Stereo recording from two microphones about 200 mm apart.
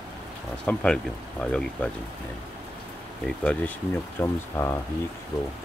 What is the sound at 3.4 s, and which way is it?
Speech, 5° left (ahead or behind).